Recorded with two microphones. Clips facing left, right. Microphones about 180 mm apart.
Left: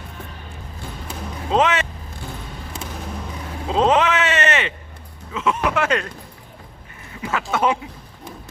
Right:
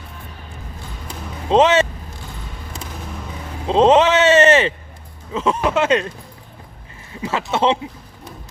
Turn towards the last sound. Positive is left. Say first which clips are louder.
# right 2 dB
turn(degrees=-25)  # may be behind; listen again after turning